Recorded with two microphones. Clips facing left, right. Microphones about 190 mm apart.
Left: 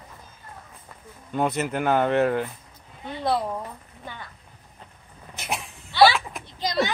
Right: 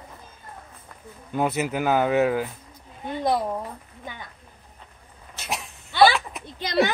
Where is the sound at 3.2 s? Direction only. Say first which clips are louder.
Right 1 dB; 15° right (ahead or behind).